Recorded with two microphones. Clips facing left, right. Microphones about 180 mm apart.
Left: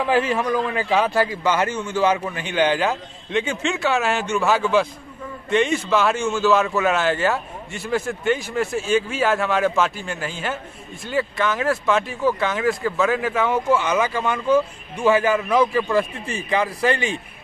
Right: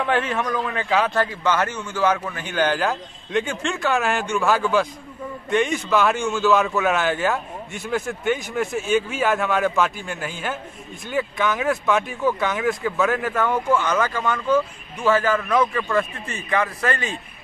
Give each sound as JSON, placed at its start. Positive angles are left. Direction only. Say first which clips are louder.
{"t": 0.0, "sound": "a man's voice", "louder": "left 3 dB", "side_deg": 5}
{"t": 16.0, "sound": "speech", "louder": "left 2 dB", "side_deg": 30}